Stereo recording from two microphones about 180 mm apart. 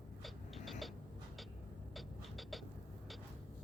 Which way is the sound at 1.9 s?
Centre (ahead or behind).